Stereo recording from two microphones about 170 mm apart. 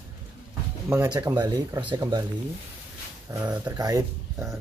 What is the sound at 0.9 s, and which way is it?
Speech, 20° right (ahead or behind).